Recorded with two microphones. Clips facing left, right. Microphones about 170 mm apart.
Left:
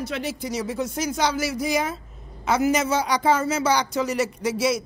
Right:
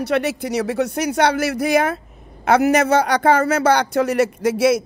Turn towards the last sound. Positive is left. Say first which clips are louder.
# right 7 dB
turn(degrees=-55)  # may be behind; listen again after turning